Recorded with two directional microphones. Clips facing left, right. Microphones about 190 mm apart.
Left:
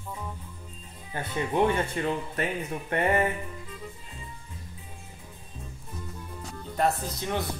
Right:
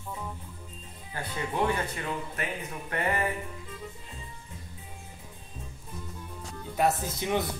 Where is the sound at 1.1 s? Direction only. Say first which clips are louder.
Left 4 dB; 20° left (ahead or behind).